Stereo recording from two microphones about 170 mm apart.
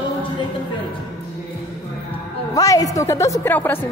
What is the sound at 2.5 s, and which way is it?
A woman's voice, 20° left (ahead or behind).